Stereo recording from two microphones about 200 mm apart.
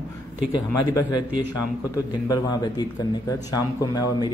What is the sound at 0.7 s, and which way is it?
A man's voice, 20° left (ahead or behind).